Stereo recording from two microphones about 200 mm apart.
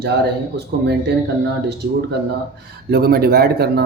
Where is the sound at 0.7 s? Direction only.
55° right (ahead or behind).